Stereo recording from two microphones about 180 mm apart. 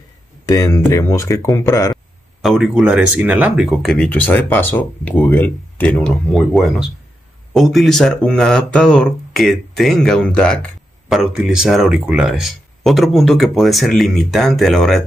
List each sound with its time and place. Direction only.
0.5 s speech: 20° left (ahead or behind)
2.4 s speech: 5° right (ahead or behind)